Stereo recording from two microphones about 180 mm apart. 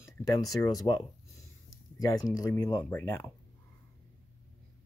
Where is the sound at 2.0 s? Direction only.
20° left (ahead or behind).